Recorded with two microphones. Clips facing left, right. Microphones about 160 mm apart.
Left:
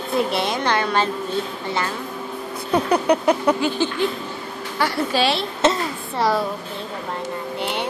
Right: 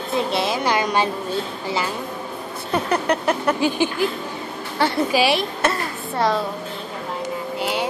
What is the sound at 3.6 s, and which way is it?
Speech, 15° right (ahead or behind).